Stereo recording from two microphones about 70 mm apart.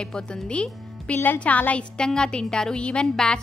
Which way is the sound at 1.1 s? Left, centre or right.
Left.